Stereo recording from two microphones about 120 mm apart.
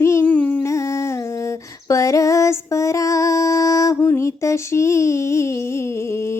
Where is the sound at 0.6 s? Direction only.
25° left (ahead or behind).